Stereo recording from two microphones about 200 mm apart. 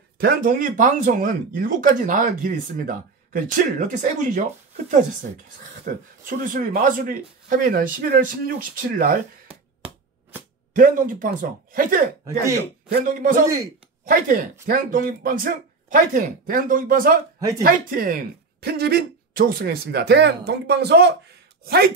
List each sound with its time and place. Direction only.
0.2 s speech: 45° right (ahead or behind)
5.9 s speech: 45° right (ahead or behind)
10.7 s speech: 45° right (ahead or behind)
13.1 s speech: 40° right (ahead or behind)